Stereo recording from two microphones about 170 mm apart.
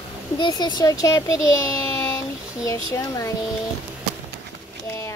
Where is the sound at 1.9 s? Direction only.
20° left (ahead or behind).